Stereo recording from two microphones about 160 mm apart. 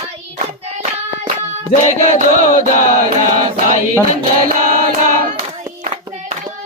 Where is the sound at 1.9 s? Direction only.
50° right (ahead or behind).